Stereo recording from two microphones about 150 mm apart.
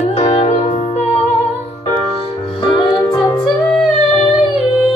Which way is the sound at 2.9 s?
20° left (ahead or behind).